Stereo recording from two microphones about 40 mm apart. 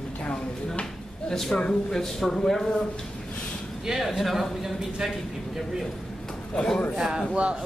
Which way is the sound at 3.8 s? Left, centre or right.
Centre.